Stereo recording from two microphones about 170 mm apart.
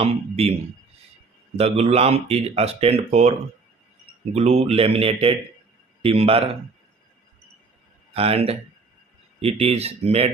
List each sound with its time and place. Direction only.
0.0 s speech: 40° right (ahead or behind)
1.5 s speech: 40° right (ahead or behind)
8.1 s speech: 35° right (ahead or behind)